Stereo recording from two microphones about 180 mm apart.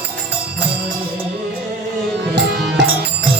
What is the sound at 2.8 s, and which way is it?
Music, 70° right (ahead or behind).